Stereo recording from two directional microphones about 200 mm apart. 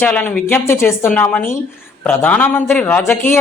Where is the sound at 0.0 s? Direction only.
10° left (ahead or behind).